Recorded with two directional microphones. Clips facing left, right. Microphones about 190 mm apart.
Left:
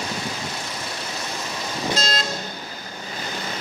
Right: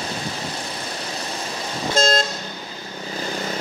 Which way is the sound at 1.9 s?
50° right (ahead or behind).